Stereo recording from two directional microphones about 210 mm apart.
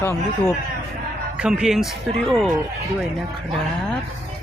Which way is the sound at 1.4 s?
5° right (ahead or behind).